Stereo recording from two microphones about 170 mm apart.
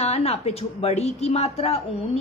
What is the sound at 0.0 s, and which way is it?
A woman's voice, 40° left (ahead or behind).